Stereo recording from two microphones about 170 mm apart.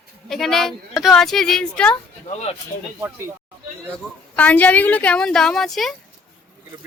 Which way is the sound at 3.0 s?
15° right (ahead or behind).